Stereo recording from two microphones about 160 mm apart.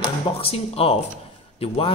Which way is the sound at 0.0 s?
35° left (ahead or behind).